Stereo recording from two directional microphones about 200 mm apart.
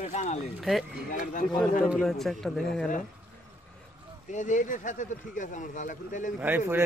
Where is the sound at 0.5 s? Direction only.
Centre (ahead or behind).